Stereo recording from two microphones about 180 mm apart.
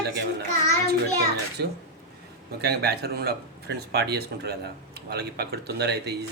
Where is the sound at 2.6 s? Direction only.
65° right (ahead or behind).